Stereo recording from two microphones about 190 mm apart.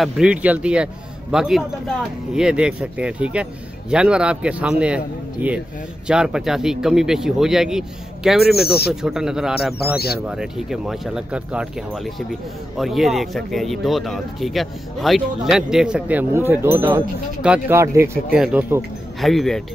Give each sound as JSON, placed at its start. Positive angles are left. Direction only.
{"t": 0.0, "sound": "speech", "side_deg": -5}
{"t": 8.6, "sound": "speech", "side_deg": 55}
{"t": 9.0, "sound": "speech", "side_deg": -5}
{"t": 9.9, "sound": "speech", "side_deg": 55}
{"t": 10.2, "sound": "speech", "side_deg": -5}